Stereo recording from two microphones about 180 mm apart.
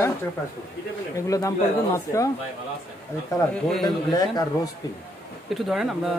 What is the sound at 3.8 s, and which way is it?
Speech, 20° left (ahead or behind).